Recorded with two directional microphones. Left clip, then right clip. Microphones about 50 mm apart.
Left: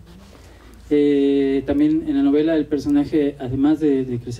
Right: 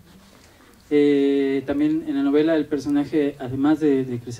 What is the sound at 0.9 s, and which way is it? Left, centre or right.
Speech, right.